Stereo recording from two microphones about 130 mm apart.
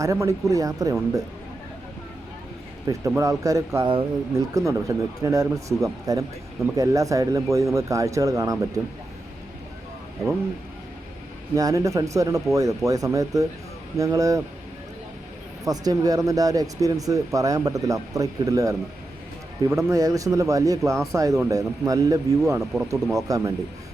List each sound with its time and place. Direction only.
0.0 s speech: 25° right (ahead or behind)
2.8 s speech: 25° right (ahead or behind)
11.5 s speech: 25° right (ahead or behind)
15.6 s speech: 30° right (ahead or behind)
22.6 s speech: 5° right (ahead or behind)
22.9 s speech: 25° right (ahead or behind)